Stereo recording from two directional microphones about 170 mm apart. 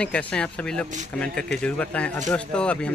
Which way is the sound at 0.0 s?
5° left (ahead or behind).